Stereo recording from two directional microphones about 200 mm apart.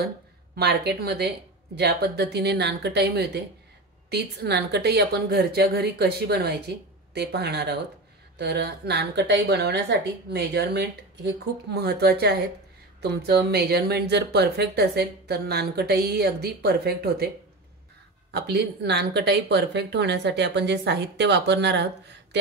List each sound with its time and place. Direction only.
0.6 s a woman's voice: 55° right (ahead or behind)
18.3 s a woman's voice: 55° right (ahead or behind)